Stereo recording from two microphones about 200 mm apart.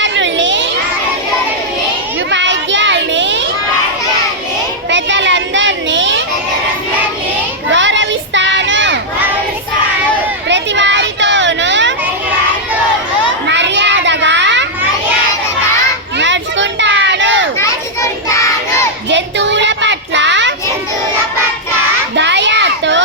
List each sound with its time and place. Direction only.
0.0 s crowd: 65° right (ahead or behind)
2.3 s children playing: 65° right (ahead or behind)
4.9 s a sound: 65° right (ahead or behind)
7.7 s child singing: 65° right (ahead or behind)
10.5 s a sound: 65° right (ahead or behind)
13.5 s child singing: 60° right (ahead or behind)
16.1 s children playing: 65° right (ahead or behind)
17.6 s children playing: 15° left (ahead or behind)
19.1 s child singing: 65° right (ahead or behind)
22.1 s children playing: 60° right (ahead or behind)